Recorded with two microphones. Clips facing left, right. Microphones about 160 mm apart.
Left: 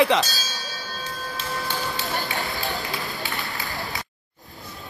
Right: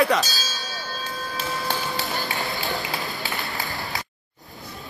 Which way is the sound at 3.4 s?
Centre (ahead or behind).